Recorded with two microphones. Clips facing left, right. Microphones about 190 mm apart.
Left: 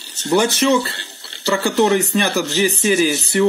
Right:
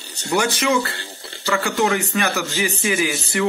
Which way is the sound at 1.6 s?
30° left (ahead or behind).